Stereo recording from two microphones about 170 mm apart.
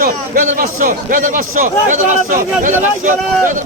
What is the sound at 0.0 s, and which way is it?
A man's voice, 55° right (ahead or behind).